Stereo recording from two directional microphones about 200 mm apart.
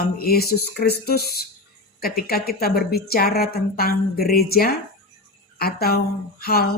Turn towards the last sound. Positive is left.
turn(degrees=50)  # may be behind; listen again after turning